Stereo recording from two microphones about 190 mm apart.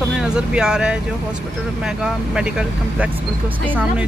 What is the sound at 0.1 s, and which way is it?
Speech, 5° right (ahead or behind).